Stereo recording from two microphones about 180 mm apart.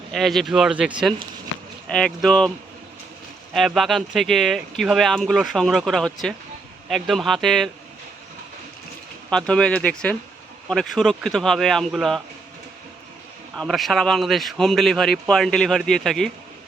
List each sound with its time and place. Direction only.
0.1 s speech: centre (ahead or behind)
3.5 s speech: centre (ahead or behind)
9.3 s speech: 5° left (ahead or behind)
13.6 s speech: centre (ahead or behind)